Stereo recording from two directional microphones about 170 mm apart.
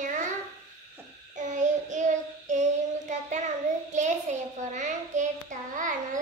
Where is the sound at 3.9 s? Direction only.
45° right (ahead or behind).